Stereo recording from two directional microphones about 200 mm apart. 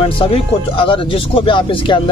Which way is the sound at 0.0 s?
25° left (ahead or behind).